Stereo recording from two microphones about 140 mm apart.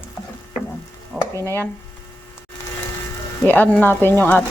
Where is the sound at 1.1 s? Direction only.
Centre (ahead or behind).